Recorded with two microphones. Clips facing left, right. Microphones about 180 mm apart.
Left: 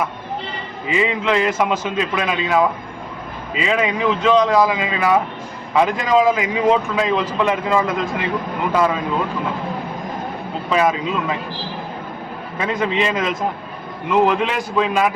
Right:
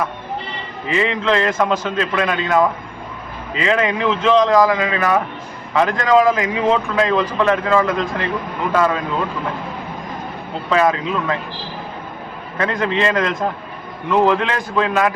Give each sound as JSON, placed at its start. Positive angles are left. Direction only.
{"t": 0.9, "sound": "a man's voice", "side_deg": 10}
{"t": 10.7, "sound": "a man's voice", "side_deg": 10}
{"t": 12.5, "sound": "a man's voice", "side_deg": 5}